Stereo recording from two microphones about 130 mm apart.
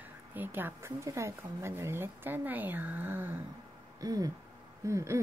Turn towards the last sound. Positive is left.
turn(degrees=-25)  # may be behind; listen again after turning